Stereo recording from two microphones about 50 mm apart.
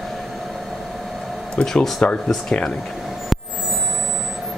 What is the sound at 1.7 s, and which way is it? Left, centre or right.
Speech, centre.